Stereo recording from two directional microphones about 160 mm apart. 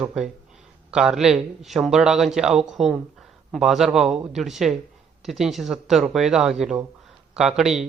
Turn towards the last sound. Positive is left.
turn(degrees=-5)  # may be behind; listen again after turning